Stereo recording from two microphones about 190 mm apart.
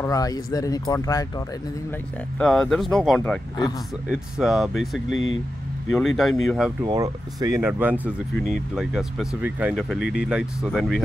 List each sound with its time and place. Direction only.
0.0 s speech: 20° left (ahead or behind)
2.3 s speech: 5° left (ahead or behind)
5.1 s speech: 90° left
5.9 s speech: centre (ahead or behind)
6.8 s speech: 20° right (ahead or behind)
8.7 s speech: 5° right (ahead or behind)